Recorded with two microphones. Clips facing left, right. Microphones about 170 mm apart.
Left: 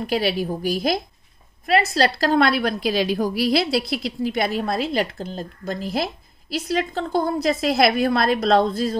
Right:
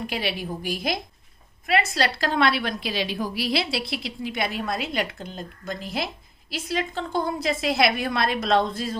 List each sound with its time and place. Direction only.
0.0 s a woman's voice: 40° left (ahead or behind)